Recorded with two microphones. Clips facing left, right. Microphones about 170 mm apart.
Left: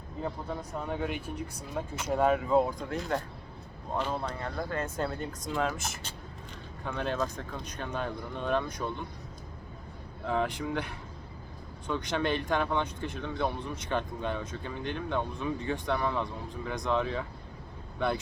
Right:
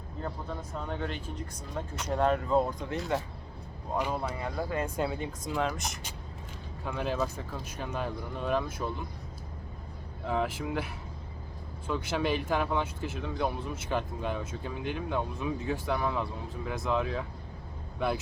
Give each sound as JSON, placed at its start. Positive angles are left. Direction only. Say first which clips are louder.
{"t": 0.7, "sound": "speech", "louder": "left 2 dB", "side_deg": 10}
{"t": 10.2, "sound": "speech", "louder": "left 1 dB", "side_deg": -5}